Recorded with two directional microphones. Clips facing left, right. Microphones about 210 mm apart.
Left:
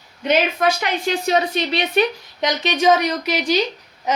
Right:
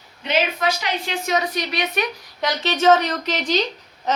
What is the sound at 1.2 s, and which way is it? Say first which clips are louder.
Speech: left 2 dB; 30° left (ahead or behind).